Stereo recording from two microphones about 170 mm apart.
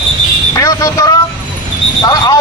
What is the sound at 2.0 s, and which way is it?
Speech, 25° left (ahead or behind).